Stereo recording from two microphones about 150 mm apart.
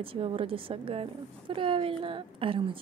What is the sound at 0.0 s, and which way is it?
A woman's voice, 40° right (ahead or behind).